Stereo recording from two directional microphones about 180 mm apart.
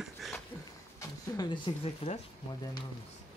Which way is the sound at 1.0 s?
25° left (ahead or behind).